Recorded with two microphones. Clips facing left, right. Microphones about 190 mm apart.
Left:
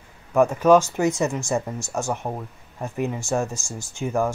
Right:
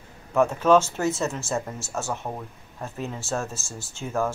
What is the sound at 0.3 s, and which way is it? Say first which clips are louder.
Speech: left 3 dB; 10° left (ahead or behind).